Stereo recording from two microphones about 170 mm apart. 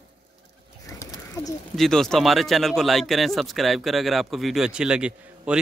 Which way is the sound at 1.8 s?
5° left (ahead or behind).